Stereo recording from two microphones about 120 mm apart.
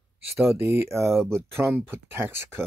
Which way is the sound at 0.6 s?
20° right (ahead or behind).